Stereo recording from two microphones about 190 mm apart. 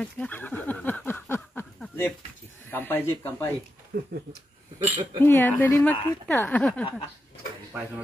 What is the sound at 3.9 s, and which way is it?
Speech, 60° right (ahead or behind).